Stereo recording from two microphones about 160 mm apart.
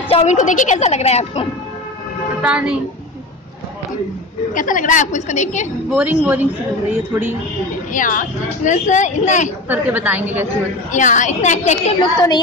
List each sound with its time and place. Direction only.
0.1 s speech: 50° left (ahead or behind)
2.4 s a woman's voice: 5° right (ahead or behind)
4.6 s speech: 55° left (ahead or behind)
5.9 s a woman's voice: 10° right (ahead or behind)
7.9 s speech: 55° left (ahead or behind)
9.7 s a woman's voice: 10° right (ahead or behind)
10.9 s speech: 50° left (ahead or behind)
12.0 s speech: 25° left (ahead or behind)